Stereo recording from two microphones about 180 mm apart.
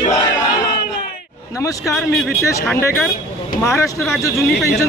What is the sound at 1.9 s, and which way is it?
Speech, centre (ahead or behind).